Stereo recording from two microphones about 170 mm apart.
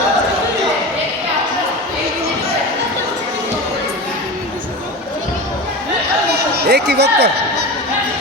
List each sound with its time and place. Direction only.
6.7 s speech: 75° right (ahead or behind)